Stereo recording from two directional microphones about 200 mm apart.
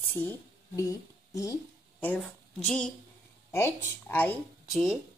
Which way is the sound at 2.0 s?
5° left (ahead or behind).